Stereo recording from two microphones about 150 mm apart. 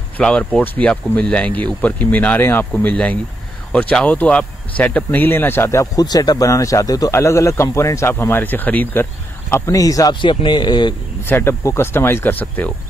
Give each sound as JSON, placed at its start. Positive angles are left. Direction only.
{"t": 0.2, "sound": "speech", "side_deg": 5}
{"t": 11.2, "sound": "speech", "side_deg": 15}